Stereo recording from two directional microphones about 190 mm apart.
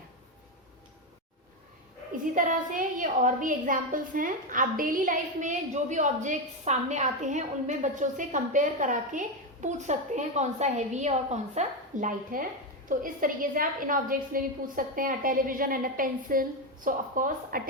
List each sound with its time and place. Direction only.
2.3 s a woman's voice: 45° right (ahead or behind)